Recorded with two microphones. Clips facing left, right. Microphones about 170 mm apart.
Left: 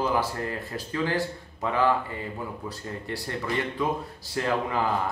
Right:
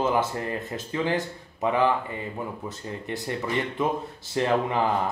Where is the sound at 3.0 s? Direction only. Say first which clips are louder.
Right 2 dB; 20° right (ahead or behind).